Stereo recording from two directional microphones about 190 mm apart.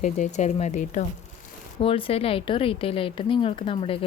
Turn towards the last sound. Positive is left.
turn(degrees=30)  # may be behind; listen again after turning